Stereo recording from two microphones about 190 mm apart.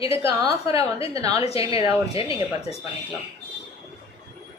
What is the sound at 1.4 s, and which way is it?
Speech, 30° left (ahead or behind).